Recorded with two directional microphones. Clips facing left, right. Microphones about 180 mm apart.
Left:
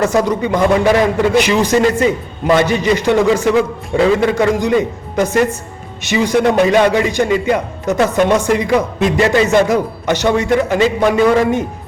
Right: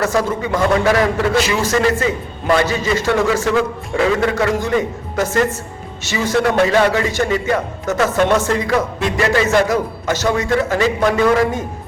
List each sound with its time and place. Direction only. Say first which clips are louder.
0.0 s a man's voice: left 4 dB; 20° left (ahead or behind)